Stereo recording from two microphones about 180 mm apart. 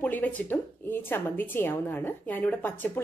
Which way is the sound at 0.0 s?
10° left (ahead or behind).